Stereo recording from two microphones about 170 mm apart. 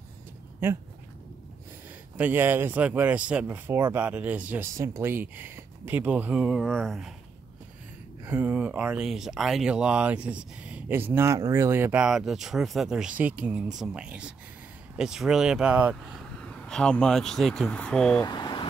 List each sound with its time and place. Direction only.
2.1 s speech: 10° right (ahead or behind)
8.3 s speech: 10° right (ahead or behind)
16.3 s speech: 5° left (ahead or behind)
18.2 s speech: 25° left (ahead or behind)